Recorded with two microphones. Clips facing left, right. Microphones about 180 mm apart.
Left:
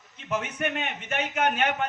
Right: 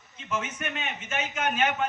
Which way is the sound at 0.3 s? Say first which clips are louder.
Left 4 dB; 60° left (ahead or behind).